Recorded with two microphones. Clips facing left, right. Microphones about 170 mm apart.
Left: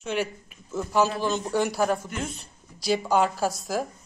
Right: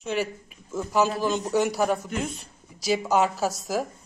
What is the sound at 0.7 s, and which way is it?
A woman's voice, centre (ahead or behind).